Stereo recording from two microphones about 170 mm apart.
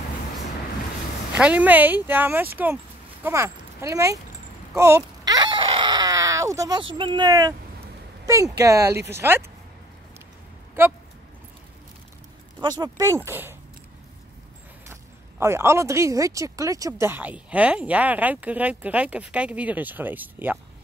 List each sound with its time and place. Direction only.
1.3 s speech: 10° right (ahead or behind)
4.7 s a sound: 15° right (ahead or behind)
7.0 s speech: 25° right (ahead or behind)
10.8 s speech: 15° right (ahead or behind)
12.5 s speech: 25° right (ahead or behind)
14.9 s speech: 15° right (ahead or behind)